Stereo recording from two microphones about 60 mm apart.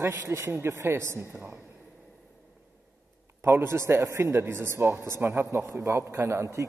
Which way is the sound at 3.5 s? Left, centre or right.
Right.